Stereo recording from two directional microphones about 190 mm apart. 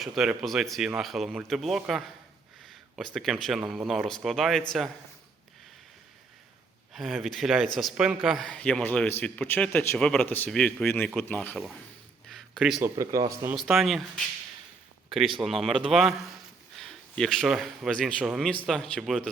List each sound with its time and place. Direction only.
0.0 s a man's voice: centre (ahead or behind)
6.9 s a man's voice: centre (ahead or behind)
12.3 s a sound: centre (ahead or behind)
12.8 s speech: 15° right (ahead or behind)
13.5 s a man's voice: centre (ahead or behind)